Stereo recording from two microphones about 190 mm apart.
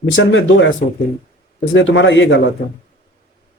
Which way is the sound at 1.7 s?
75° left (ahead or behind).